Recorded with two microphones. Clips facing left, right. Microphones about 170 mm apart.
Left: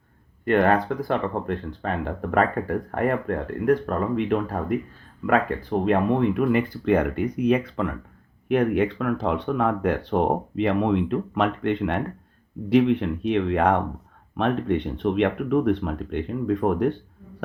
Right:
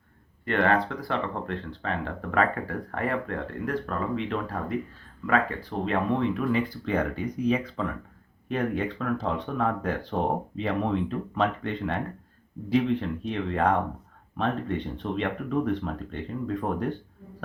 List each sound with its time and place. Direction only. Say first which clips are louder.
0.4 s speech: left 5 dB; 45° left (ahead or behind)
5.8 s speech: left 4 dB; 55° left (ahead or behind)